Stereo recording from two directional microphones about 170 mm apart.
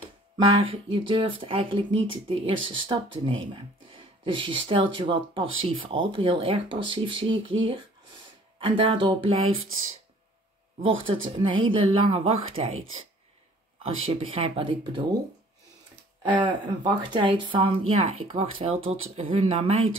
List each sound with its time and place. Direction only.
0.5 s speech: 30° right (ahead or behind)
10.8 s speech: 30° right (ahead or behind)
13.8 s speech: 35° right (ahead or behind)
16.2 s speech: 25° right (ahead or behind)